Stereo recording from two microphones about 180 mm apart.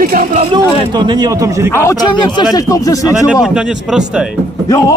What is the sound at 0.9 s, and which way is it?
Speech, 25° right (ahead or behind).